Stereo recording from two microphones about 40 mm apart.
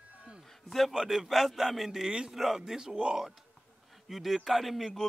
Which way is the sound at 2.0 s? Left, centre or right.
Centre.